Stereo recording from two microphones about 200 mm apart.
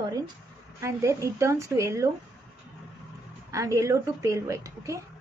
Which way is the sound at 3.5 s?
15° right (ahead or behind).